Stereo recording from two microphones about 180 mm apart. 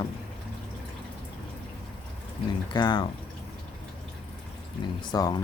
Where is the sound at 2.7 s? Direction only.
25° left (ahead or behind).